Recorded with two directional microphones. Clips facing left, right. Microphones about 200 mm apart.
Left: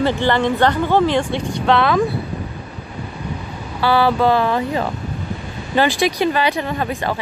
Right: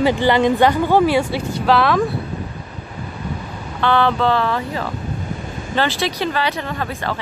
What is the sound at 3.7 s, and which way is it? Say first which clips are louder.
Speech: left 1 dB; 5° left (ahead or behind).